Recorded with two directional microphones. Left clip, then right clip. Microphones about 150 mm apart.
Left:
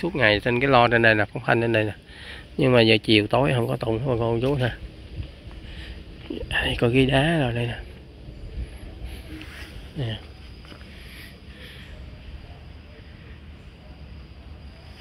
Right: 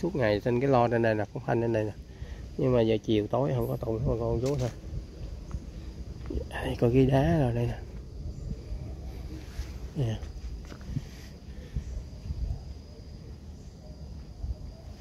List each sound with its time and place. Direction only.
0.2 s speech: 5° right (ahead or behind)
1.2 s speech: 20° left (ahead or behind)
3.6 s speech: 75° left (ahead or behind)
4.0 s speech: 55° left (ahead or behind)
6.5 s speech: centre (ahead or behind)
9.9 s speech: 15° right (ahead or behind)